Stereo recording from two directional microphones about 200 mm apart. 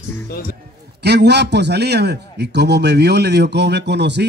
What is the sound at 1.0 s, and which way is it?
A man's voice, 55° right (ahead or behind).